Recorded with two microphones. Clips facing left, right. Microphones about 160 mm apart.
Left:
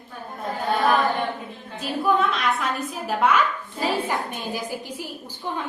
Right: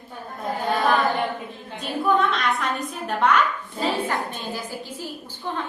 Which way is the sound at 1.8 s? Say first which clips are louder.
Even; centre (ahead or behind).